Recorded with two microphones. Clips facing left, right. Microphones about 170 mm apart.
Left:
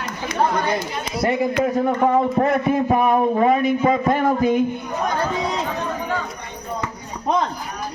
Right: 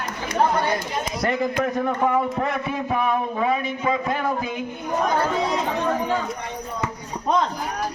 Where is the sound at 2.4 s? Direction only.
45° left (ahead or behind).